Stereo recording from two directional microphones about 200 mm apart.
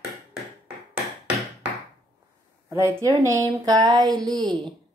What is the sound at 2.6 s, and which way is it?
Speech, 15° right (ahead or behind).